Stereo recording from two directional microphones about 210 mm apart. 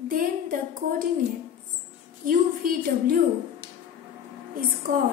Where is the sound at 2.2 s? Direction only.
40° right (ahead or behind).